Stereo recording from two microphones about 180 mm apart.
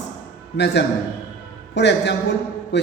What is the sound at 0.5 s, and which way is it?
A man's voice, 70° left (ahead or behind).